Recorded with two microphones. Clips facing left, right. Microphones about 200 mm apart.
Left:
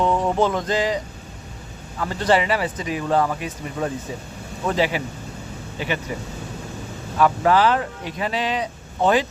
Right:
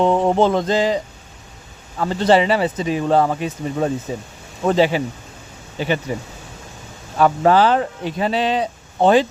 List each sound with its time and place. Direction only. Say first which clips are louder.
0.0 s speech: right 4 dB; 30° right (ahead or behind)
2.0 s speech: right 5 dB; 25° right (ahead or behind)
7.2 s speech: right 3 dB; 30° right (ahead or behind)